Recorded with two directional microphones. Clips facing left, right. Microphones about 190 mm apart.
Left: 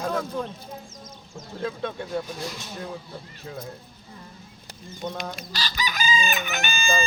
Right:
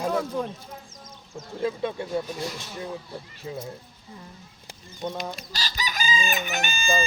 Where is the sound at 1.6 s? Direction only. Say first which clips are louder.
Right 3 dB; 10° right (ahead or behind).